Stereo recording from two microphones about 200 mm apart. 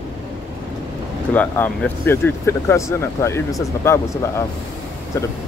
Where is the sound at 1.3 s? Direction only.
5° left (ahead or behind).